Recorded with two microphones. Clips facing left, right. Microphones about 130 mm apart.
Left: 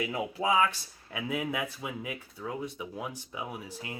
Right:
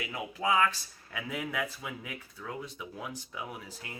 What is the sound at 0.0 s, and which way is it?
Speech, 25° left (ahead or behind).